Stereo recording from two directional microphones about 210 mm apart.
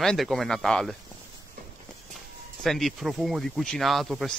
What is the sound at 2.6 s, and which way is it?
Speech, centre (ahead or behind).